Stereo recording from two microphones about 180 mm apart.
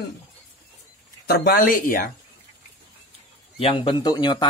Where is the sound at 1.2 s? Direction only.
60° left (ahead or behind).